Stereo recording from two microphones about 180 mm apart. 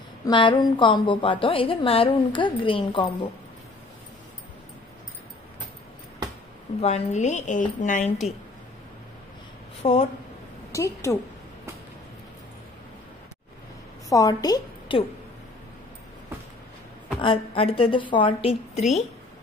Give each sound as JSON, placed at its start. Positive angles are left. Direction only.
{"t": 0.2, "sound": "a woman's voice", "side_deg": 25}
{"t": 6.8, "sound": "a woman's voice", "side_deg": 40}
{"t": 9.8, "sound": "a woman's voice", "side_deg": 40}
{"t": 10.7, "sound": "a woman's voice", "side_deg": 15}
{"t": 14.0, "sound": "a woman's voice", "side_deg": 20}
{"t": 17.2, "sound": "a woman's voice", "side_deg": 30}